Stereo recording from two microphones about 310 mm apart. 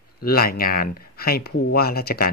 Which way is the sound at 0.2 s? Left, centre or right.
Left.